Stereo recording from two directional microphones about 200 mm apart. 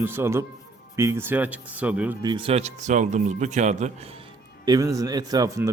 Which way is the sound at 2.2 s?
25° right (ahead or behind).